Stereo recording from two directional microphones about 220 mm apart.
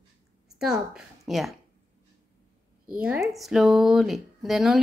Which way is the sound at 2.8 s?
5° right (ahead or behind).